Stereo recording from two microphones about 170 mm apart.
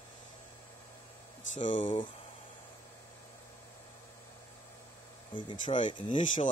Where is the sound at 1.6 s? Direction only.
30° left (ahead or behind).